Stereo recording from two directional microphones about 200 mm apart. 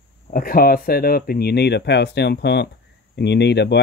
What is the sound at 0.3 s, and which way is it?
Speech, 45° left (ahead or behind).